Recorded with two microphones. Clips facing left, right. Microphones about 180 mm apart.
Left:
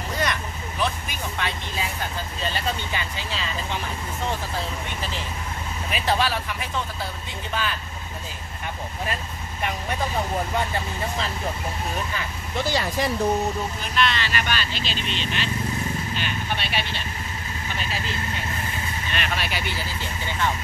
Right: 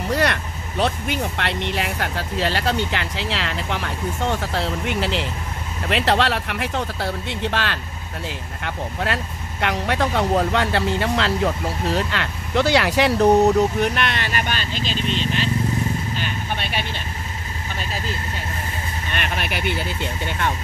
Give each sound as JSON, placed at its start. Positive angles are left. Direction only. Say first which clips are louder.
{"t": 0.1, "sound": "speech", "louder": "right 6 dB", "side_deg": -70}
{"t": 19.1, "sound": "speech", "louder": "right 2 dB", "side_deg": -55}